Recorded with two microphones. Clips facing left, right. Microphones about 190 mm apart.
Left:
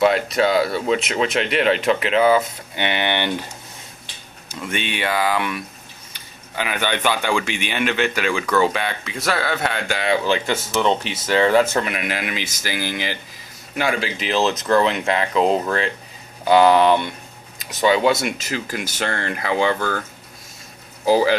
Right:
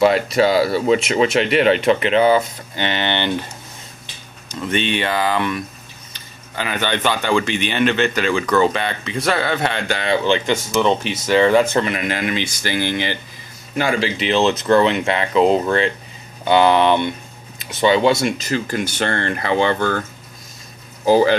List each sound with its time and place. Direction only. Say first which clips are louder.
0.0 s speech: right 3 dB; centre (ahead or behind)
2.7 s speech: right 1 dB; 15° left (ahead or behind)
4.5 s speech: right 6 dB; 10° left (ahead or behind)
14.5 s speech: right 3 dB; 30° right (ahead or behind)
14.8 s speech: right 2 dB; centre (ahead or behind)
21.0 s speech: right 3 dB; 5° left (ahead or behind)